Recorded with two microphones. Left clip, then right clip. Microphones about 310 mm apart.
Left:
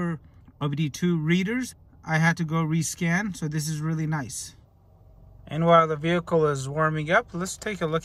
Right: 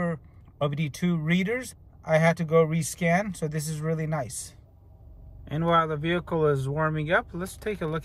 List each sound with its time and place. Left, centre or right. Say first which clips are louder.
0.6 s speech: right 1 dB; centre